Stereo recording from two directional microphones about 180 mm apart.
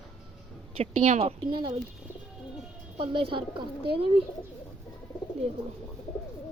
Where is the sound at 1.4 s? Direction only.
25° right (ahead or behind).